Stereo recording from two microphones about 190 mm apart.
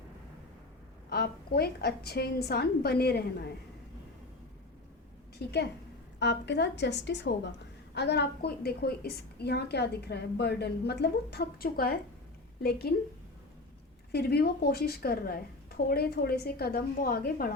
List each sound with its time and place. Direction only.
1.1 s a woman's voice: 55° left (ahead or behind)
5.4 s a woman's voice: 55° left (ahead or behind)
14.1 s a woman's voice: 55° left (ahead or behind)